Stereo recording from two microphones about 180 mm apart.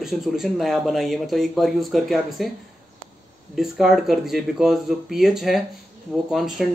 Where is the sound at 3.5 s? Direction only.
Centre (ahead or behind).